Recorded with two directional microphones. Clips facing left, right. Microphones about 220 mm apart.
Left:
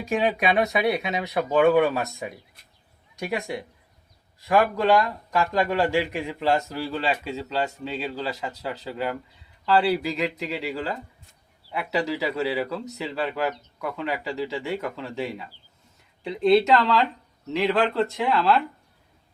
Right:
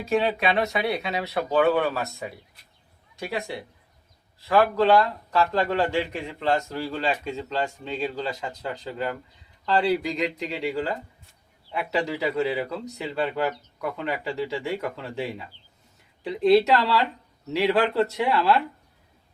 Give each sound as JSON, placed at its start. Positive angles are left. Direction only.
{"t": 0.0, "sound": "speech", "side_deg": 15}
{"t": 11.7, "sound": "speech", "side_deg": 5}